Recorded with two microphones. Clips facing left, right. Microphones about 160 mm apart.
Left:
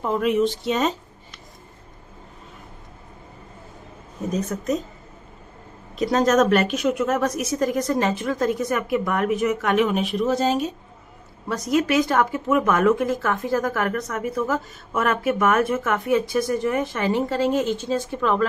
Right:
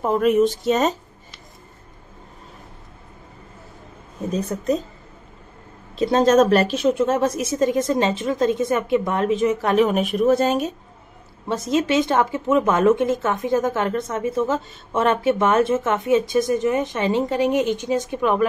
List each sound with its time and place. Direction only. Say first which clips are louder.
0.0 s speech: right 3 dB; 45° right (ahead or behind)
4.3 s a woman's voice: right 2 dB; 30° right (ahead or behind)
5.9 s speech: right 3 dB; 30° right (ahead or behind); by 10.7 s 55° right (ahead or behind)
11.4 s speech: right 1 dB; 25° right (ahead or behind)